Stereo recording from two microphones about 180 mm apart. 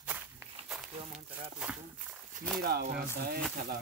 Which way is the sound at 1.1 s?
5° right (ahead or behind).